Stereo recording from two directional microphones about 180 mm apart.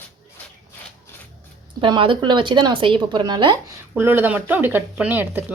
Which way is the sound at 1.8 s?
25° right (ahead or behind).